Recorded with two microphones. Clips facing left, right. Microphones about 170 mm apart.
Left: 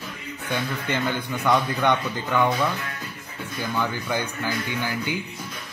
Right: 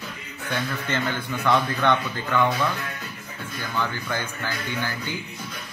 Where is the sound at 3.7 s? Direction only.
15° left (ahead or behind).